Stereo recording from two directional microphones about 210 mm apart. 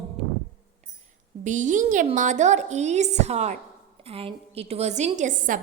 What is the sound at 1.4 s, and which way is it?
A woman's voice, 35° right (ahead or behind).